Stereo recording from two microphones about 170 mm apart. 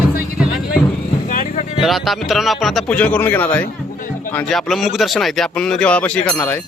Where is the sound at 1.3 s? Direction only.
45° left (ahead or behind).